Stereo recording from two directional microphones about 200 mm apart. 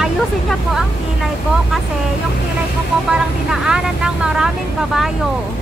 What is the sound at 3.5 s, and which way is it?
Speech, 5° right (ahead or behind).